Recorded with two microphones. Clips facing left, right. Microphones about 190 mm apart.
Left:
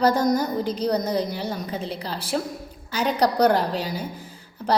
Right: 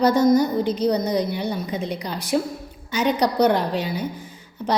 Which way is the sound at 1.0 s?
35° left (ahead or behind).